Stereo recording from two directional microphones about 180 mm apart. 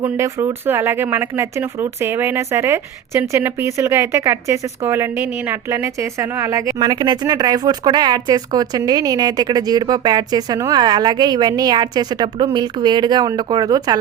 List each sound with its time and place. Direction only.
0.0 s speech: 15° right (ahead or behind)